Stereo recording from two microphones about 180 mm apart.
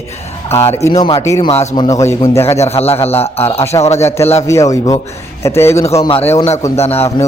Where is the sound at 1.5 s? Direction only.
40° left (ahead or behind).